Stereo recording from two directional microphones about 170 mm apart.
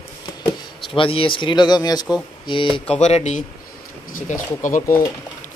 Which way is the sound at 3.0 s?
40° left (ahead or behind).